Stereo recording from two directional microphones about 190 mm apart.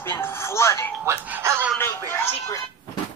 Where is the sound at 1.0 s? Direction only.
10° right (ahead or behind).